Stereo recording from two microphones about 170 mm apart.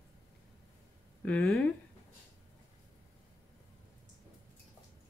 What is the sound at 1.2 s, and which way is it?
Speech, 5° left (ahead or behind).